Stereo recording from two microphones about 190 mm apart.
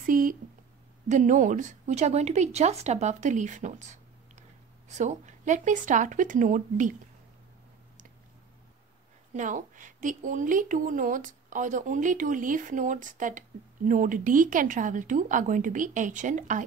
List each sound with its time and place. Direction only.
0.0 s a sound: 45° right (ahead or behind)
1.0 s speech: 40° right (ahead or behind)
9.3 s a woman's voice: 40° right (ahead or behind)